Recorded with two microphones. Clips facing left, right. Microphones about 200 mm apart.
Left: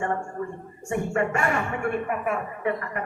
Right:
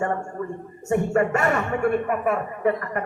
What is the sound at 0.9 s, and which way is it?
A man's voice, 40° right (ahead or behind).